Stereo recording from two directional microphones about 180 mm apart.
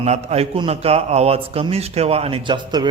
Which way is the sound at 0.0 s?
35° right (ahead or behind).